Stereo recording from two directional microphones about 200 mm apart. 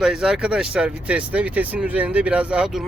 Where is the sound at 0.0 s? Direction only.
5° right (ahead or behind).